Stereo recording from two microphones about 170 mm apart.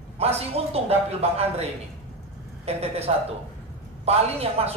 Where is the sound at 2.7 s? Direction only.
35° right (ahead or behind).